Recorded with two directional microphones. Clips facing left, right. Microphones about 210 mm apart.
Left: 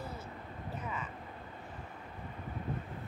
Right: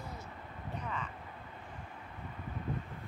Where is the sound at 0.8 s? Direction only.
5° left (ahead or behind).